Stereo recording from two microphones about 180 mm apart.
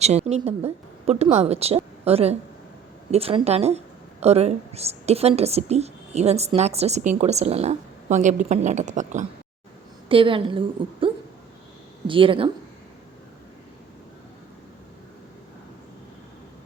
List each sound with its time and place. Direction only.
0.0 s a woman's voice: 35° right (ahead or behind)
10.1 s a woman's voice: 30° right (ahead or behind)
12.0 s a woman's voice: 30° right (ahead or behind)